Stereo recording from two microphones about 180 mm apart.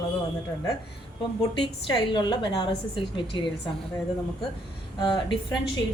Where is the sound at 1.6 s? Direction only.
25° left (ahead or behind).